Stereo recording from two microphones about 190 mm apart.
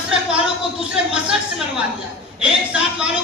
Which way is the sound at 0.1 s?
5° right (ahead or behind).